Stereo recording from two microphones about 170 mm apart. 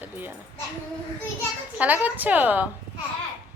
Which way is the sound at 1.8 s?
10° right (ahead or behind).